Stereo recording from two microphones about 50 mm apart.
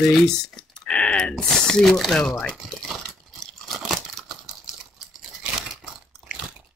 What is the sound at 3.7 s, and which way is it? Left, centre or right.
Crumpling, centre.